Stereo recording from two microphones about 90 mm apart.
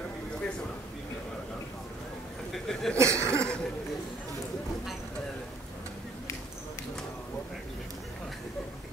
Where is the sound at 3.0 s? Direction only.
35° right (ahead or behind).